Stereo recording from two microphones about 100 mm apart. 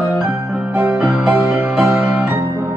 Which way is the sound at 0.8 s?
25° right (ahead or behind).